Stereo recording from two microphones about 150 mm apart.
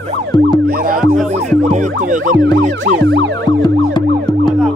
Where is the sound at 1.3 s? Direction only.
50° right (ahead or behind).